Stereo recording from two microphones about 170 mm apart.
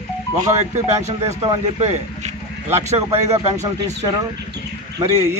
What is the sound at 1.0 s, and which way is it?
A man's voice, 40° right (ahead or behind).